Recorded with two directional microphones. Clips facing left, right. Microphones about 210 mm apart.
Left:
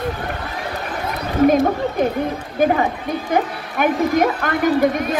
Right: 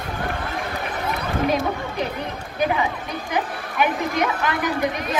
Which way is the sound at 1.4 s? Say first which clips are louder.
Left 9 dB; 50° left (ahead or behind).